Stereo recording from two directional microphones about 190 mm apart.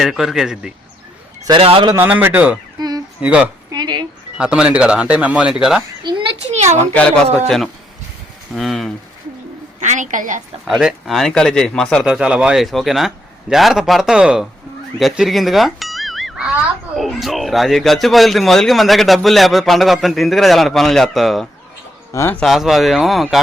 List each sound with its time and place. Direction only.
0.0 s a man's voice: centre (ahead or behind)
1.5 s speech: 30° right (ahead or behind)
2.0 s speech: 10° right (ahead or behind)
2.7 s a sound: 20° right (ahead or behind)
3.2 s speech: 10° right (ahead or behind)
3.7 s speech: 20° right (ahead or behind)
4.4 s a man's voice: 5° right (ahead or behind)
6.0 s a child's voice: 25° right (ahead or behind)
7.3 s a man's voice: centre (ahead or behind)
9.8 s a woman's voice: 40° right (ahead or behind)
10.7 s a man's voice: centre (ahead or behind)
22.1 s a man's voice: 10° left (ahead or behind)